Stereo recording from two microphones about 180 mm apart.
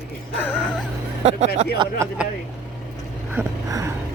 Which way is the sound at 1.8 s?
15° right (ahead or behind).